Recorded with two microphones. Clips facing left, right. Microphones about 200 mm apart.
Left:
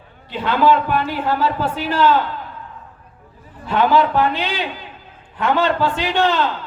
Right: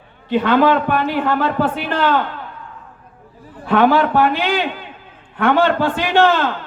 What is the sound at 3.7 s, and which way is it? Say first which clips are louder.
A man's voice: right 2 dB; 55° right (ahead or behind).